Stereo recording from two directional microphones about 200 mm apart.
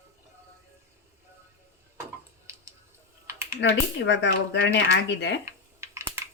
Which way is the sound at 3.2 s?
15° right (ahead or behind).